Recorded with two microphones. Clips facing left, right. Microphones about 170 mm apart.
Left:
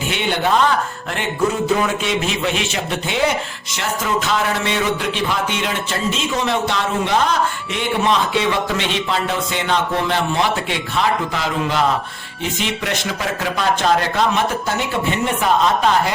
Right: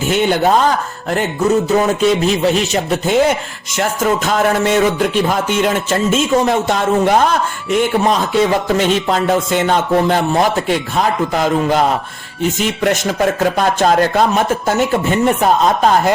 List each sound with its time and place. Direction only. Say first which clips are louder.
0.1 s speech: right 6 dB; 40° right (ahead or behind)